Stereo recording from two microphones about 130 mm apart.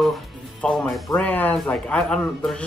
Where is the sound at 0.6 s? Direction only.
5° left (ahead or behind).